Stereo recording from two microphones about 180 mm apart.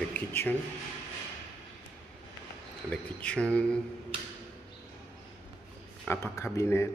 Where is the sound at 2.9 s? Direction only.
5° left (ahead or behind).